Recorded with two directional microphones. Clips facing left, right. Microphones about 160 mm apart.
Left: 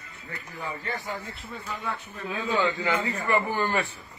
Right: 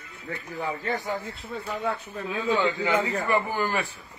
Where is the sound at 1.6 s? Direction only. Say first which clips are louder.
Right 5 dB; 35° right (ahead or behind).